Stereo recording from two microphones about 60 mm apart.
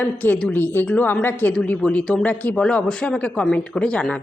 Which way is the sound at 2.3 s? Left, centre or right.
Left.